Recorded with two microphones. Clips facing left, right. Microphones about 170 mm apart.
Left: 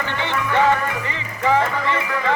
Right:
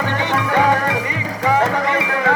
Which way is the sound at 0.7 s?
85° right.